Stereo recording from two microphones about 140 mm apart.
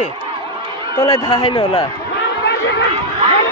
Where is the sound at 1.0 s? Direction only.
30° left (ahead or behind).